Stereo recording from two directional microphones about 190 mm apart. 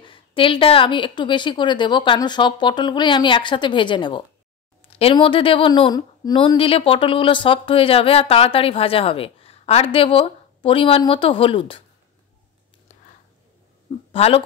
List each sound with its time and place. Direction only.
0.0 s speech: 25° left (ahead or behind)
14.1 s speech: 30° left (ahead or behind)